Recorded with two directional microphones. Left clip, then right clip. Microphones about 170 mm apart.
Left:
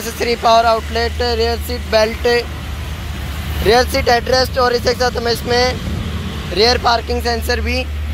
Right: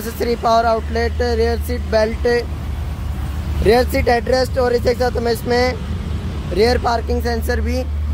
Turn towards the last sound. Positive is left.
turn(degrees=-20)  # may be behind; listen again after turning